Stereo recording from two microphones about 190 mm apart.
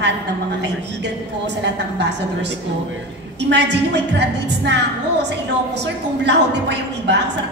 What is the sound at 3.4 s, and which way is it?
A woman's voice, 65° right (ahead or behind).